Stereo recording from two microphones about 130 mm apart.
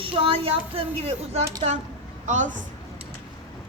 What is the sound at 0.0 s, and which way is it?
A woman's voice, 45° right (ahead or behind).